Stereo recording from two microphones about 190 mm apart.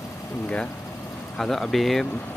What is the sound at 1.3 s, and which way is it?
Speech, centre (ahead or behind).